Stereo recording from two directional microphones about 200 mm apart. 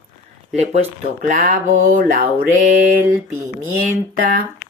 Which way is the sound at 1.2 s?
40° right (ahead or behind).